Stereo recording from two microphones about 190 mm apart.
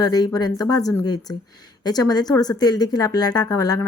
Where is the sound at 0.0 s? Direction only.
20° left (ahead or behind).